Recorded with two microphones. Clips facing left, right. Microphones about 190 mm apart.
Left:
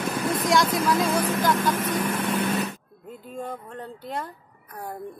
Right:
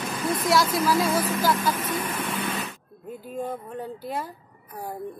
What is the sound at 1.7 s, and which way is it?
Speech, 45° left (ahead or behind).